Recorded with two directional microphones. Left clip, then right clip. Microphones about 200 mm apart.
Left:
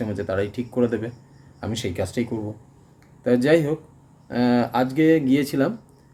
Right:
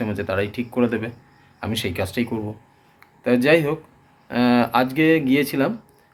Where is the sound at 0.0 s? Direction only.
15° left (ahead or behind).